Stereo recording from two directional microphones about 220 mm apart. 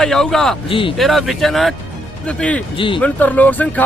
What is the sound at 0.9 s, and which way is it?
Speech, centre (ahead or behind).